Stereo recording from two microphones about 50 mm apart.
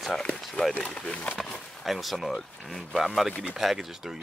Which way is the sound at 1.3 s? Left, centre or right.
Centre.